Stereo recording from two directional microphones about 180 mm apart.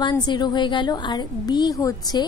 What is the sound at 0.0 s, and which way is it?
A woman's voice, 25° left (ahead or behind).